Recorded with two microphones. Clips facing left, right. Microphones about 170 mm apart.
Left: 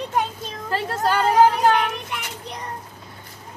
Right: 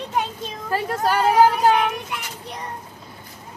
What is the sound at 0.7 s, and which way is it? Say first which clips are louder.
Speech: right 1 dB; 10° right (ahead or behind).